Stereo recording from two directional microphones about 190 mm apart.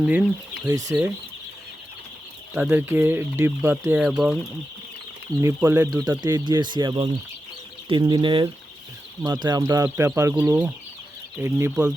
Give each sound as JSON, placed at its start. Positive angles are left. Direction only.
{"t": 0.0, "sound": "speech", "side_deg": -5}
{"t": 2.6, "sound": "speech", "side_deg": -5}
{"t": 5.5, "sound": "speech", "side_deg": -10}